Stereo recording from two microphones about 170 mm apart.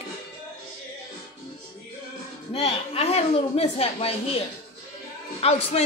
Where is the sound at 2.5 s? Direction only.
35° left (ahead or behind).